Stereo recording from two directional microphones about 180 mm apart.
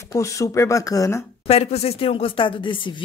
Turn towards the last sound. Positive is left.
turn(degrees=25)  # may be behind; listen again after turning